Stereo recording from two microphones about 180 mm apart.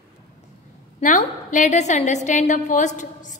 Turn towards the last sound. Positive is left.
turn(degrees=45)  # may be behind; listen again after turning